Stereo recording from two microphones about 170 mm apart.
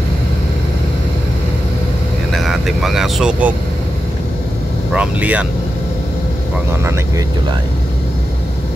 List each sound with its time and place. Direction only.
2.3 s speech: centre (ahead or behind)
4.9 s speech: 5° right (ahead or behind)
6.7 s speech: 15° right (ahead or behind)